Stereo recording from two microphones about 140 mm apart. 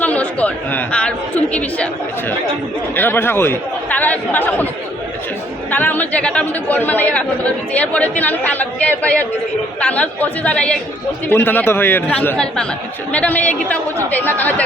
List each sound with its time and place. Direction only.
0.0 s speech: 10° left (ahead or behind)
2.9 s speech: 15° left (ahead or behind)
5.7 s speech: 10° left (ahead or behind)